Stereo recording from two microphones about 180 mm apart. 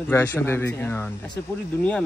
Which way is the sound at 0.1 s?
10° left (ahead or behind).